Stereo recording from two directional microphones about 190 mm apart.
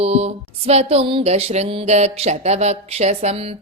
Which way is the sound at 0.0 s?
35° right (ahead or behind).